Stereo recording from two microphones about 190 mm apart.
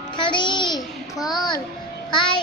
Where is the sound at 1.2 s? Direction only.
20° left (ahead or behind).